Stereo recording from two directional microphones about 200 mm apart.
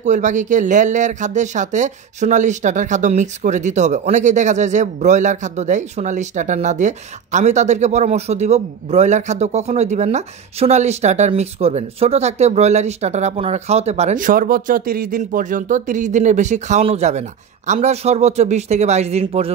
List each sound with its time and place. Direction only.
0.0 s speech: 35° right (ahead or behind)